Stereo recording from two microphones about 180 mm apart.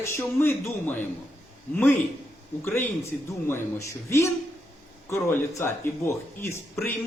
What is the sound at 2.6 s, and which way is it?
Speech, 10° left (ahead or behind).